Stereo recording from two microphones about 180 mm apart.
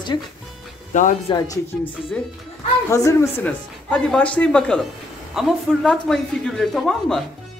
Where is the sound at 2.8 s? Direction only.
15° left (ahead or behind).